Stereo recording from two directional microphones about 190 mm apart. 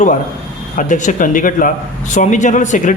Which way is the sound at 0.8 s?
40° left (ahead or behind).